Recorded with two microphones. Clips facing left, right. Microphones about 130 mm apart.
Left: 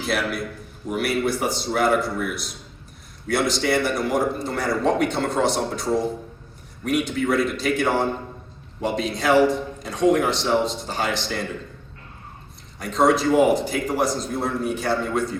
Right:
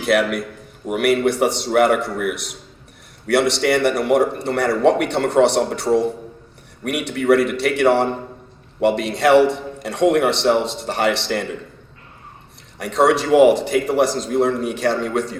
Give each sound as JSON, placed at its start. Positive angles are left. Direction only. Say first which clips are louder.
{"t": 0.0, "sound": "a man's voice", "louder": "right 7 dB", "side_deg": -70}
{"t": 12.8, "sound": "a man's voice", "louder": "right 2 dB", "side_deg": -75}